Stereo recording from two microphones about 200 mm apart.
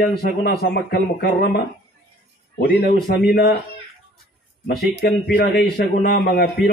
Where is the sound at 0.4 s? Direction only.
50° left (ahead or behind).